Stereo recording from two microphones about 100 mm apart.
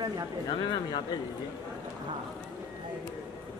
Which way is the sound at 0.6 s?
45° left (ahead or behind).